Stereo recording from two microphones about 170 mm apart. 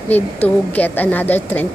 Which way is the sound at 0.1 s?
10° left (ahead or behind).